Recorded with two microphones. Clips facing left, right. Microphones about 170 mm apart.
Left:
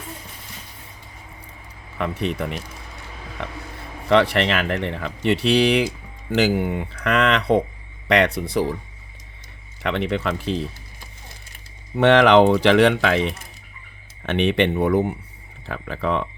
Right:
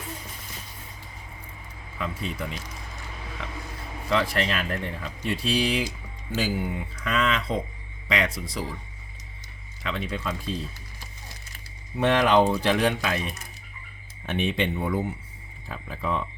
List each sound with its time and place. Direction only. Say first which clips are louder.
2.0 s speech: left 7 dB; 70° left (ahead or behind)
9.8 s speech: left 8 dB; 70° left (ahead or behind)
11.9 s speech: left 7 dB; 80° left